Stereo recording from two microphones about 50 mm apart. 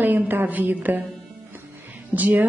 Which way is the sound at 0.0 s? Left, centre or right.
Right.